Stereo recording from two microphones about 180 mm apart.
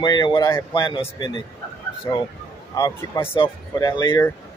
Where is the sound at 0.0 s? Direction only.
20° left (ahead or behind).